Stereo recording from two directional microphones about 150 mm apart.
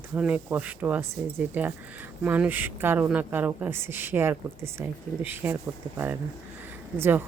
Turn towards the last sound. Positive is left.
turn(degrees=-15)  # may be behind; listen again after turning